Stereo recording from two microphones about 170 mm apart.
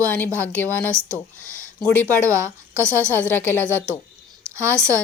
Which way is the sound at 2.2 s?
15° right (ahead or behind).